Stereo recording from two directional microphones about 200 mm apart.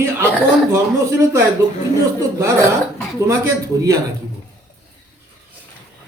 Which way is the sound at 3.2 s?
15° right (ahead or behind).